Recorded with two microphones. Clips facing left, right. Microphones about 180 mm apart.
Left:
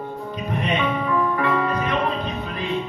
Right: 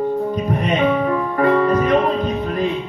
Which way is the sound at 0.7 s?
45° right (ahead or behind).